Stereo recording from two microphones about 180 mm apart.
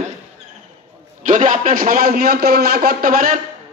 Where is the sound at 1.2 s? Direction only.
45° right (ahead or behind).